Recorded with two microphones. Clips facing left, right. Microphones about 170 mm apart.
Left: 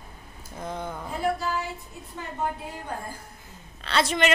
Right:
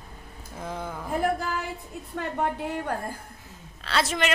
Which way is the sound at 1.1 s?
55° right (ahead or behind).